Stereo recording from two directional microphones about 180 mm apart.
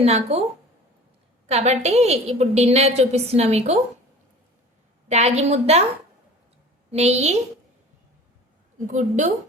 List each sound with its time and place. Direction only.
0.0 s a woman's voice: 35° right (ahead or behind)
1.5 s a woman's voice: 35° right (ahead or behind)
5.0 s a woman's voice: 40° right (ahead or behind)
6.9 s a woman's voice: 35° right (ahead or behind)
8.9 s a woman's voice: 45° right (ahead or behind)